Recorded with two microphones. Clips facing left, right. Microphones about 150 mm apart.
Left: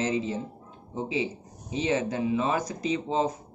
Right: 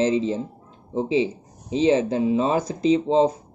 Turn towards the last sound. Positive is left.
turn(degrees=-30)  # may be behind; listen again after turning